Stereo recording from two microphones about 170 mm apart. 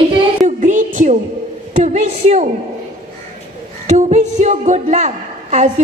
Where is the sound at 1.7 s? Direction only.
45° right (ahead or behind).